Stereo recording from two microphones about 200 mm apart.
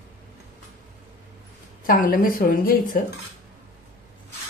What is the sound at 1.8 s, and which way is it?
A woman's voice, 45° left (ahead or behind).